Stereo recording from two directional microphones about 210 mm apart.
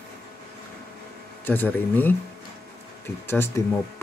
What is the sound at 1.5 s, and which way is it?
Speech, 10° left (ahead or behind).